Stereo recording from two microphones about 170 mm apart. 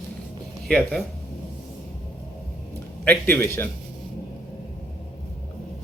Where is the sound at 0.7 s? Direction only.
5° left (ahead or behind).